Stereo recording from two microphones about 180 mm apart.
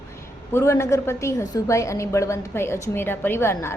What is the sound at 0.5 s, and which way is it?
A woman's voice, 15° left (ahead or behind).